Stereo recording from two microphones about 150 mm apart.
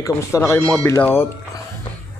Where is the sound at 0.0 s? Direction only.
20° left (ahead or behind).